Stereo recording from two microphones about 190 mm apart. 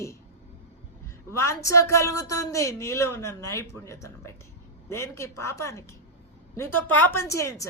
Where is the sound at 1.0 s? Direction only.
15° left (ahead or behind).